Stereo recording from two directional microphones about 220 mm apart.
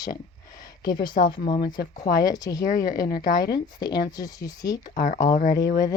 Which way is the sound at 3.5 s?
20° left (ahead or behind).